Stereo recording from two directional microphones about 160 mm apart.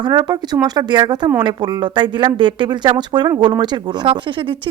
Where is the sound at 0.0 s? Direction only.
25° right (ahead or behind).